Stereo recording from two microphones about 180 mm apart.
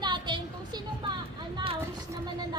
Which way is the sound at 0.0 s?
25° right (ahead or behind).